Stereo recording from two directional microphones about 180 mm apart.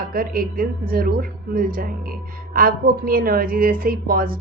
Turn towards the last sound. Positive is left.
turn(degrees=-55)  # may be behind; listen again after turning